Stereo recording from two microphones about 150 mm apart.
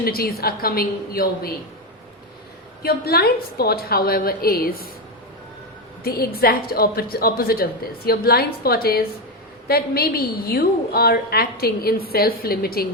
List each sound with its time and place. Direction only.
0.0 s a woman's voice: 90° left
2.8 s a woman's voice: 90° left
6.0 s a woman's voice: 90° left